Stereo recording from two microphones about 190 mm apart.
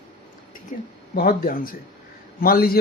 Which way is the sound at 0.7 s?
40° left (ahead or behind).